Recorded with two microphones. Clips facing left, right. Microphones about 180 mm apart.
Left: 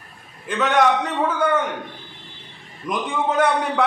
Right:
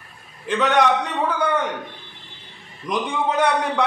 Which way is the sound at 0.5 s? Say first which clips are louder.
Even; centre (ahead or behind).